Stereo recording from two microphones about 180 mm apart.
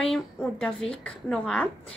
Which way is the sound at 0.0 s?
5° left (ahead or behind).